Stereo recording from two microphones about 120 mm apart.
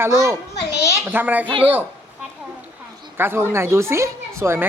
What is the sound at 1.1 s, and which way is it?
Speech, 15° right (ahead or behind).